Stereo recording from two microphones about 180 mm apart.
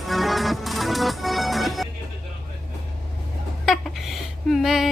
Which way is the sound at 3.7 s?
Centre (ahead or behind).